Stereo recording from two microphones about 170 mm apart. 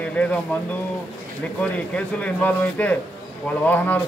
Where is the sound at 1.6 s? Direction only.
10° left (ahead or behind).